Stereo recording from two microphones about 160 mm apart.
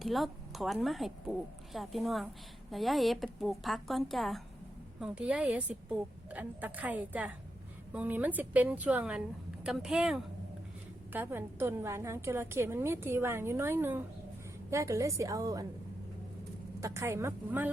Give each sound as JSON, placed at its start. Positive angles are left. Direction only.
{"t": 0.0, "sound": "a woman's voice", "side_deg": 0}
{"t": 11.1, "sound": "a woman's voice", "side_deg": -10}
{"t": 16.8, "sound": "a woman's voice", "side_deg": -15}